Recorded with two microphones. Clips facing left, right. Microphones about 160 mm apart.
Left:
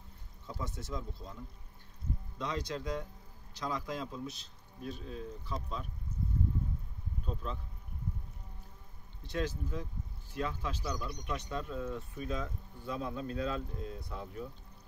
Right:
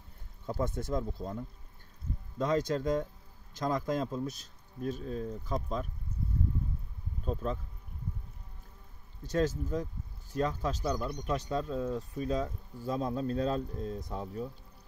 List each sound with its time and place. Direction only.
0.5 s speech: 50° right (ahead or behind)
9.2 s speech: 40° right (ahead or behind)